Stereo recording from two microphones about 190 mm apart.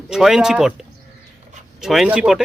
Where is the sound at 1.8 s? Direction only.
Centre (ahead or behind).